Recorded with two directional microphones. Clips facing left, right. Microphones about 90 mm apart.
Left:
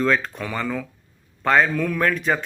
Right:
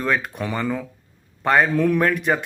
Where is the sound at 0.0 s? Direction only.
15° right (ahead or behind).